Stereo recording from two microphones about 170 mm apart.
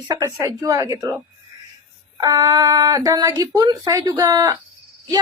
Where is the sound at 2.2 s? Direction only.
20° right (ahead or behind).